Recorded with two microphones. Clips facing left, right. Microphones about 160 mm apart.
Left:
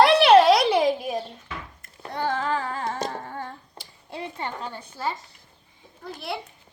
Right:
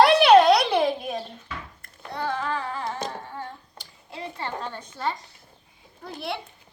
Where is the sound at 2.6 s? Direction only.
45° left (ahead or behind).